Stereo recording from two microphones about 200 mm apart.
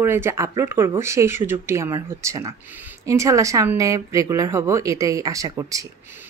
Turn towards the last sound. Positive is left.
turn(degrees=-15)  # may be behind; listen again after turning